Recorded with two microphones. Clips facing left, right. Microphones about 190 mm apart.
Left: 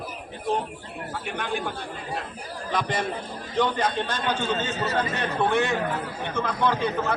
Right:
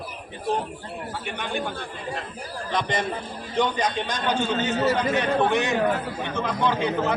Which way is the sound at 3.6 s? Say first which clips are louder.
Even; 15° right (ahead or behind).